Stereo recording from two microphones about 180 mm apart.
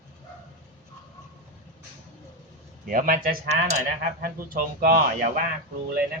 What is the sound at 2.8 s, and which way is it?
Speech, 50° right (ahead or behind).